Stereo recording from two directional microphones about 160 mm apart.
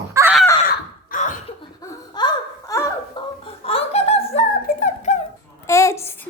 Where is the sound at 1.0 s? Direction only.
50° left (ahead or behind).